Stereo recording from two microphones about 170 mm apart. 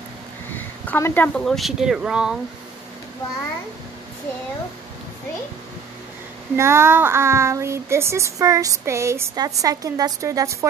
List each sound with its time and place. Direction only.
0.6 s speech: 15° left (ahead or behind); by 2.3 s 5° right (ahead or behind)
6.5 s speech: 15° right (ahead or behind)